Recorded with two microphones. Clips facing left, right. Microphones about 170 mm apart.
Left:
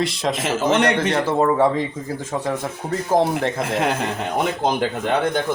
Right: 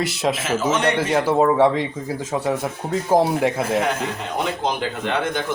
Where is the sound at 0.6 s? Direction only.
65° left (ahead or behind).